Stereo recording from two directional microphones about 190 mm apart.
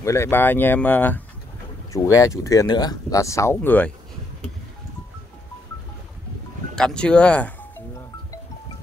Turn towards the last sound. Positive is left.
turn(degrees=5)  # may be behind; listen again after turning